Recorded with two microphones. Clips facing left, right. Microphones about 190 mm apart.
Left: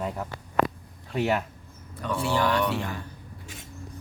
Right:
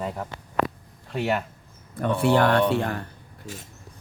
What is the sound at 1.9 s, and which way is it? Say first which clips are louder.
Speech: right 6 dB; 55° right (ahead or behind).